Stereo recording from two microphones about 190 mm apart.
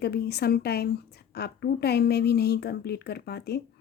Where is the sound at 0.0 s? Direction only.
55° left (ahead or behind).